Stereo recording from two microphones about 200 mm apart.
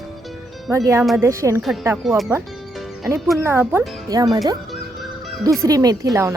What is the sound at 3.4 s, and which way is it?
Speech, 10° right (ahead or behind).